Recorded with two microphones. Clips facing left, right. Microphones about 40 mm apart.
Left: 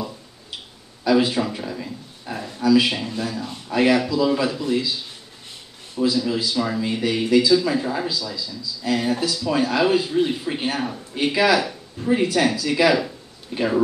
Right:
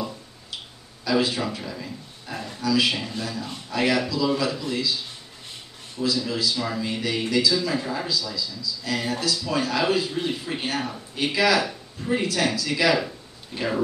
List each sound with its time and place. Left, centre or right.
1.0 s a sound: centre
1.5 s a man's voice: centre
5.9 s a man's voice: centre
11.3 s a man's voice: centre